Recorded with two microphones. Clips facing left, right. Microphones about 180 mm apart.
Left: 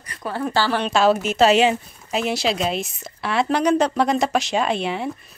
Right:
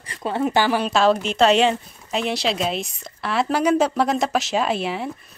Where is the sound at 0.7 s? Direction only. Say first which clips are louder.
Even; centre (ahead or behind).